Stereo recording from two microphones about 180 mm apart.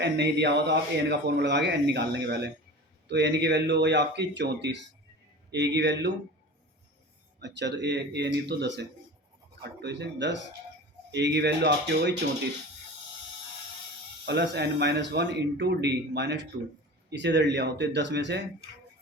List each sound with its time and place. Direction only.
0.0 s speech: 70° right (ahead or behind)
7.3 s speech: 75° right (ahead or behind)
14.3 s speech: 70° right (ahead or behind)